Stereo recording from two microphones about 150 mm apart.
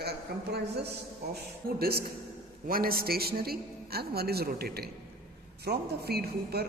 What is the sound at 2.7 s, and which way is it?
A man's voice, 80° right.